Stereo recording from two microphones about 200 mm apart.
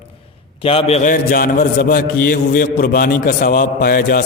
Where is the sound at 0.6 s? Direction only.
30° left (ahead or behind).